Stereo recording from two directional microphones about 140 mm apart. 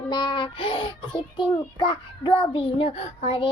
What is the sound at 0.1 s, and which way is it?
A child's voice, 35° left (ahead or behind).